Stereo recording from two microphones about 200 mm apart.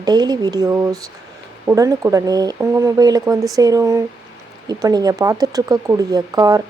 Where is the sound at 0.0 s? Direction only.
20° right (ahead or behind).